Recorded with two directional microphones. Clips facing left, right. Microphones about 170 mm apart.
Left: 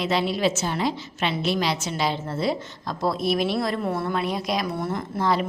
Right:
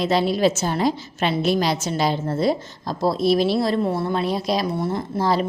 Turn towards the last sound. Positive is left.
turn(degrees=-35)  # may be behind; listen again after turning